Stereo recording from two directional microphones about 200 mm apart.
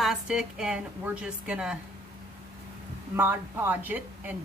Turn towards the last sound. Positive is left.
turn(degrees=-10)  # may be behind; listen again after turning